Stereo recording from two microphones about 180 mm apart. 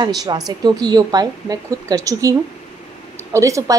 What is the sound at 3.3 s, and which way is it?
Speech, 15° right (ahead or behind).